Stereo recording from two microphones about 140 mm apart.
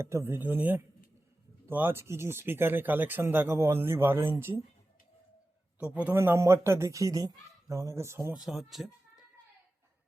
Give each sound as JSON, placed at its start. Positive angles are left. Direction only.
{"t": 0.0, "sound": "speech", "side_deg": -20}
{"t": 6.1, "sound": "speech", "side_deg": -15}
{"t": 8.4, "sound": "speech", "side_deg": 0}